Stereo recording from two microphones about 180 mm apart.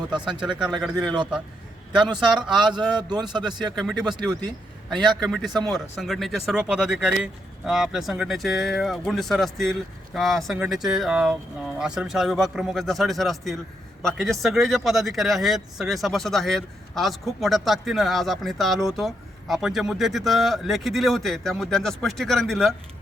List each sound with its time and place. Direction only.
0.3 s speech: 5° right (ahead or behind)
2.1 s speech: 5° right (ahead or behind)
2.9 s a man's voice: 25° right (ahead or behind)
3.8 s speech: centre (ahead or behind)
4.9 s a man's voice: 25° right (ahead or behind)
5.3 s speech: centre (ahead or behind)